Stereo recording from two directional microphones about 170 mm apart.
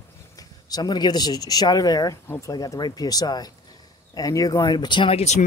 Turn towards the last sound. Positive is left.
turn(degrees=40)  # may be behind; listen again after turning